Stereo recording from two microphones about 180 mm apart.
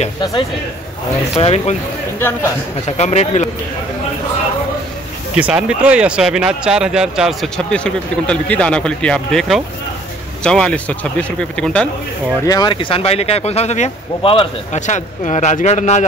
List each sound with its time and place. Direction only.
1.3 s speech: 35° left (ahead or behind)
3.0 s speech: 40° left (ahead or behind)
5.3 s speech: 5° right (ahead or behind)
12.4 s speech: 25° left (ahead or behind)
14.8 s speech: 40° left (ahead or behind)